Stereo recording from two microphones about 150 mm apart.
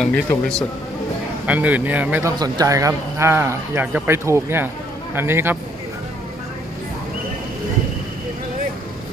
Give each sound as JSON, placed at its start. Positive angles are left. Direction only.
{"t": 0.0, "sound": "speech", "side_deg": 5}
{"t": 1.4, "sound": "speech", "side_deg": -10}
{"t": 2.3, "sound": "speech", "side_deg": -25}